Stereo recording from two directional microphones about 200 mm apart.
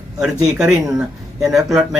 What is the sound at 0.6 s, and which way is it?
Speech, centre (ahead or behind).